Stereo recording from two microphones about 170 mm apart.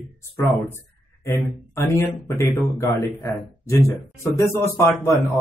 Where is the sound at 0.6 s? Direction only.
15° left (ahead or behind).